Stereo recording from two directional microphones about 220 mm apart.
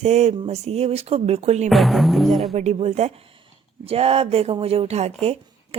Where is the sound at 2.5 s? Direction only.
30° right (ahead or behind).